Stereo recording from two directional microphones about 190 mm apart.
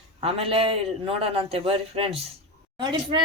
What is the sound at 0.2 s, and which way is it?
A man's voice, 30° right (ahead or behind).